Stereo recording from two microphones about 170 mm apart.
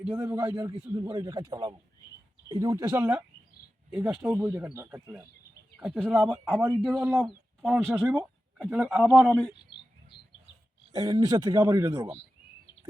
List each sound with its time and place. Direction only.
0.2 s speech: 15° right (ahead or behind)
0.7 s speech: 30° right (ahead or behind); by 9.4 s 5° right (ahead or behind)
9.7 s bird: 30° left (ahead or behind)
10.9 s speech: 20° right (ahead or behind)